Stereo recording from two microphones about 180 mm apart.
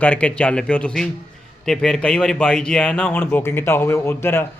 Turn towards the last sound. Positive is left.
turn(degrees=15)  # may be behind; listen again after turning